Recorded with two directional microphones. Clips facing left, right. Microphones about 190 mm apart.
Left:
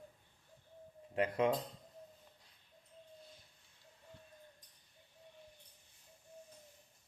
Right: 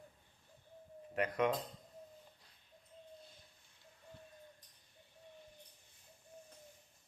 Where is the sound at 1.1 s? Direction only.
30° left (ahead or behind).